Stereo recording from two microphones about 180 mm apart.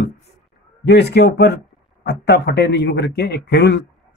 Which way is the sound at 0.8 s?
65° left (ahead or behind).